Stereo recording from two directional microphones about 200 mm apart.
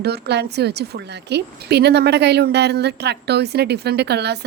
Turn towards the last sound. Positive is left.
turn(degrees=-55)  # may be behind; listen again after turning